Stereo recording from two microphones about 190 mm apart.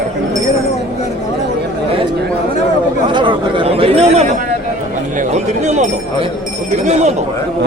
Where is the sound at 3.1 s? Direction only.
25° right (ahead or behind).